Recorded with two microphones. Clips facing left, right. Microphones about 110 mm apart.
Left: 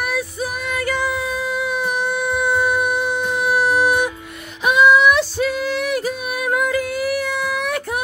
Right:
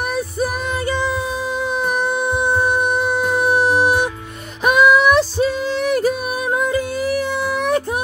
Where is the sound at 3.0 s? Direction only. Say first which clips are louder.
Right 3 dB; 45° right (ahead or behind); by 4.1 s 25° right (ahead or behind).